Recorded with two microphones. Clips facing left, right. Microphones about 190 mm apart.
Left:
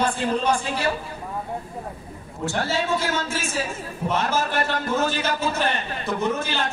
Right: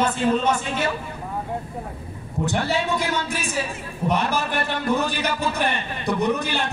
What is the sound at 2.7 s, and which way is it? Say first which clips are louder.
A man's voice: right 1 dB; 15° right (ahead or behind).